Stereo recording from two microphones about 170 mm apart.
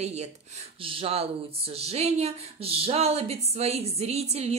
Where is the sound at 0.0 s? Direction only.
40° right (ahead or behind).